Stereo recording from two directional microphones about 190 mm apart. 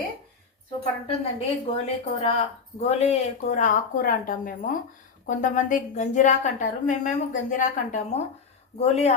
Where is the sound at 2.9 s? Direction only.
35° left (ahead or behind).